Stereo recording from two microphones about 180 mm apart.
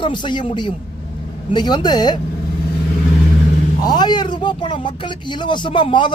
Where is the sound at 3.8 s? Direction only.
25° left (ahead or behind).